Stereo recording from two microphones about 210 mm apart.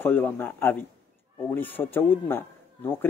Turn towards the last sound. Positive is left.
turn(degrees=10)  # may be behind; listen again after turning